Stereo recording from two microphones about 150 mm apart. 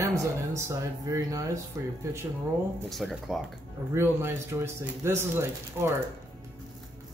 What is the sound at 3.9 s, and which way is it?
A man's voice, 15° right (ahead or behind).